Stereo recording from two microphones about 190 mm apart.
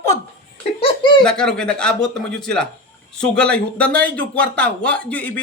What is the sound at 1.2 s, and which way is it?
Speech, 5° left (ahead or behind).